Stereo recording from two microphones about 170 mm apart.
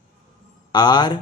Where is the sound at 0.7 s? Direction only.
25° left (ahead or behind).